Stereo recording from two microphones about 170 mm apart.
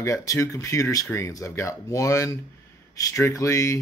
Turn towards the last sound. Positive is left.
turn(degrees=20)  # may be behind; listen again after turning